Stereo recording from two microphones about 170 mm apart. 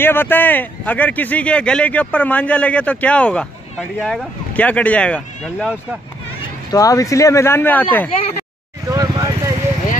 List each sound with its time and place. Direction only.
0.0 s speech: 10° left (ahead or behind)
6.7 s speech: 20° left (ahead or behind)
8.8 s vehicle: 20° right (ahead or behind)